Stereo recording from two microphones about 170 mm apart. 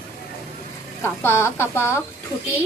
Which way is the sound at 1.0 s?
15° left (ahead or behind).